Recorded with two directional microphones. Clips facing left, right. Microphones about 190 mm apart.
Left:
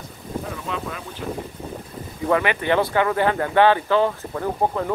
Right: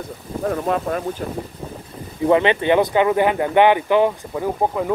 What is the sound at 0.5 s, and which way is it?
Speech, 50° right (ahead or behind).